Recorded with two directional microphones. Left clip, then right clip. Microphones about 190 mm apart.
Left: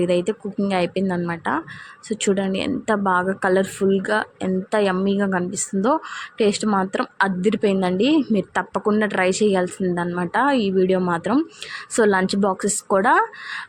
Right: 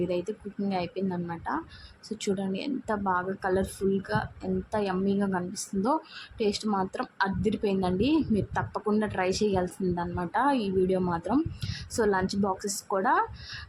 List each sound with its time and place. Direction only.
0.0 s a woman's voice: 15° left (ahead or behind)